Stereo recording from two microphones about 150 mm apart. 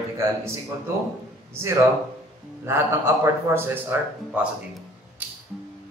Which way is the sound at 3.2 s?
15° right (ahead or behind).